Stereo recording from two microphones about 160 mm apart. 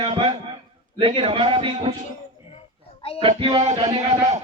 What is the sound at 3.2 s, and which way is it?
Speech, 30° right (ahead or behind).